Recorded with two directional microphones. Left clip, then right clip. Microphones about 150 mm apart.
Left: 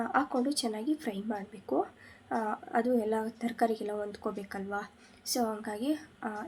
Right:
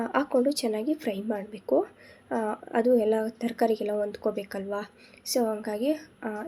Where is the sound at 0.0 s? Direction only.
20° right (ahead or behind).